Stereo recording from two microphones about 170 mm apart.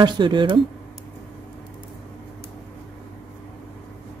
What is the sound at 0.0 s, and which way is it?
Speech, 25° right (ahead or behind).